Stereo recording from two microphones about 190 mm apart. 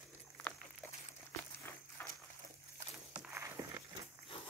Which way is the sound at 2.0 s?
10° left (ahead or behind).